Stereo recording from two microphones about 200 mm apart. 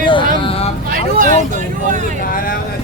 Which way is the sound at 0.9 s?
45° right (ahead or behind).